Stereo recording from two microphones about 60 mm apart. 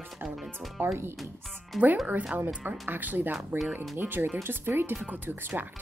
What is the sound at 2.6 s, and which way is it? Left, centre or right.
A woman's voice, right.